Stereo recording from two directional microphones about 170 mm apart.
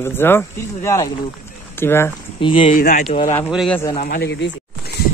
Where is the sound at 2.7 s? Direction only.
45° left (ahead or behind).